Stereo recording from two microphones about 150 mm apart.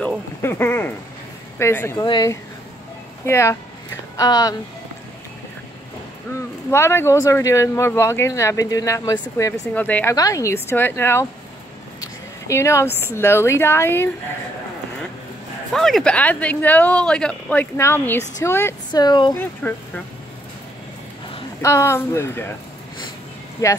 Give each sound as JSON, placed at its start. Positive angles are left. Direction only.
{"t": 0.4, "sound": "a sound", "side_deg": 15}
{"t": 1.6, "sound": "speech", "side_deg": 15}
{"t": 2.0, "sound": "speech", "side_deg": 30}
{"t": 3.3, "sound": "speech", "side_deg": 20}
{"t": 6.3, "sound": "speech", "side_deg": 15}
{"t": 9.5, "sound": "speech", "side_deg": 10}
{"t": 10.1, "sound": "speech", "side_deg": 20}
{"t": 15.7, "sound": "speech", "side_deg": 5}
{"t": 18.9, "sound": "speech", "side_deg": 30}
{"t": 19.6, "sound": "speech", "side_deg": 10}
{"t": 21.5, "sound": "speech", "side_deg": 20}
{"t": 23.6, "sound": "speech", "side_deg": 20}